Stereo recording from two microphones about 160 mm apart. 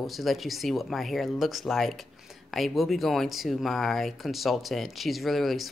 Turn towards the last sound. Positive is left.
turn(degrees=0)  # may be behind; listen again after turning